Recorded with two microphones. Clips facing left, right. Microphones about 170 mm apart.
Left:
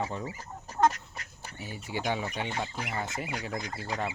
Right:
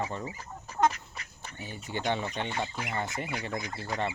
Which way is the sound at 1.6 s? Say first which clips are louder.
Even; 10° left (ahead or behind).